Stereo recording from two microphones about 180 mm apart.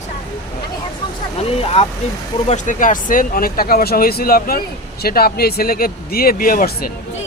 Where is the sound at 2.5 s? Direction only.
45° left (ahead or behind).